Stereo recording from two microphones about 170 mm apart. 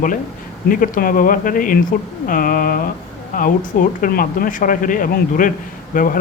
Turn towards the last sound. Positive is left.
turn(degrees=50)  # may be behind; listen again after turning